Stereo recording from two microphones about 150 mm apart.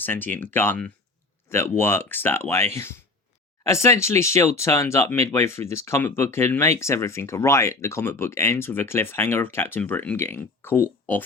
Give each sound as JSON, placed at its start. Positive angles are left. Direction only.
{"t": 0.0, "sound": "speech", "side_deg": 10}